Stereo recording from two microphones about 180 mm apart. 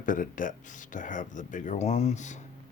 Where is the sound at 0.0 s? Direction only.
50° left (ahead or behind).